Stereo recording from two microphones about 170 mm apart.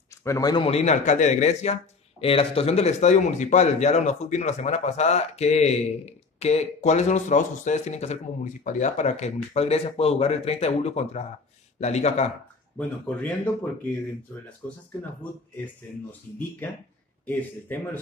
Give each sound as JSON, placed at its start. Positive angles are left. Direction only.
{"t": 0.2, "sound": "a man's voice", "side_deg": 20}
{"t": 0.7, "sound": "speech", "side_deg": 40}
{"t": 12.7, "sound": "speech", "side_deg": 10}
{"t": 15.5, "sound": "speech", "side_deg": 10}